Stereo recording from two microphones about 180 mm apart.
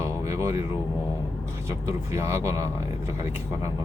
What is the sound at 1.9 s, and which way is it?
Speech, 15° right (ahead or behind).